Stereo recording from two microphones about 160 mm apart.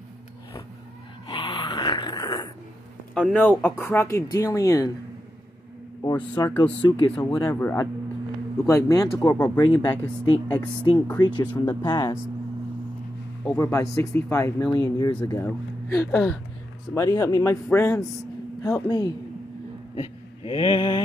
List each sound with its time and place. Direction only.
1.2 s snoring: 25° left (ahead or behind)
3.2 s speech: 5° left (ahead or behind); by 4.9 s 20° left (ahead or behind)
6.6 s speech: 30° left (ahead or behind)
7.4 s speech: 15° left (ahead or behind)
13.5 s speech: 20° left (ahead or behind)
18.9 s speech: 25° left (ahead or behind)
20.0 s a sound: 35° left (ahead or behind)